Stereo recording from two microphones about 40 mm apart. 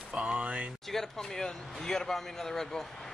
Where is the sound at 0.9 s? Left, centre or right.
Centre.